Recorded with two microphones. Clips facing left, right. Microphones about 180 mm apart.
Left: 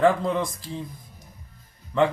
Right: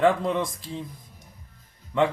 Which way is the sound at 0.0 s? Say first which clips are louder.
Left 1 dB; 5° right (ahead or behind).